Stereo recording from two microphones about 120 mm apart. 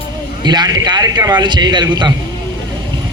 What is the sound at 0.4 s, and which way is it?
A man's voice, 35° right (ahead or behind).